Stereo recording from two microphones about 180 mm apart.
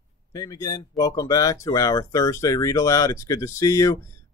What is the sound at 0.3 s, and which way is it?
Speech, 20° left (ahead or behind).